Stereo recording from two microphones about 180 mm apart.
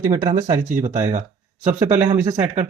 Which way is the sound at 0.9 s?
40° right (ahead or behind).